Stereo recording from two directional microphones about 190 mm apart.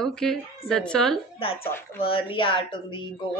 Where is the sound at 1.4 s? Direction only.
30° left (ahead or behind).